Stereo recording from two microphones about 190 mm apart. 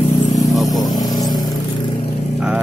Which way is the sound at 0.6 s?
Centre (ahead or behind).